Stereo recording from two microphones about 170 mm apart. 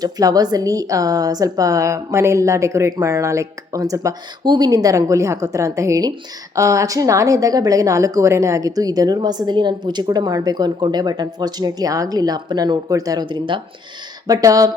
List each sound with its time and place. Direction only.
0.0 s a woman's voice: 20° right (ahead or behind)